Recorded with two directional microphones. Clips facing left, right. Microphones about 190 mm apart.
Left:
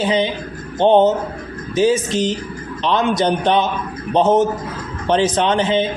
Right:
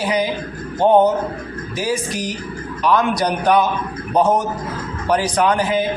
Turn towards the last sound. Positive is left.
turn(degrees=25)  # may be behind; listen again after turning